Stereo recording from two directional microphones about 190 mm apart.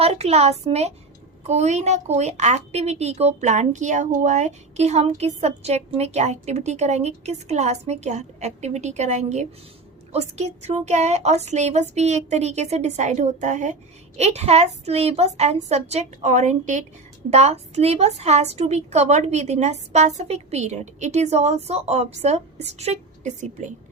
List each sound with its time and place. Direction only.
0.0 s a woman's voice: 35° right (ahead or behind)